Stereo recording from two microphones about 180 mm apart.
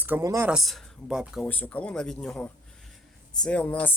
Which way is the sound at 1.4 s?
10° left (ahead or behind).